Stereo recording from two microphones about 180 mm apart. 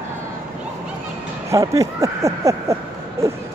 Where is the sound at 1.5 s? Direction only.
20° right (ahead or behind).